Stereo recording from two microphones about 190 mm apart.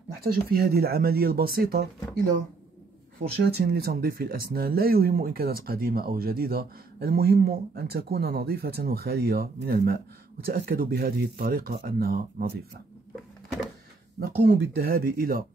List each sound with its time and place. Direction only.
0.2 s speech: 50° right (ahead or behind)
3.2 s speech: 55° right (ahead or behind)
14.4 s speech: 55° right (ahead or behind)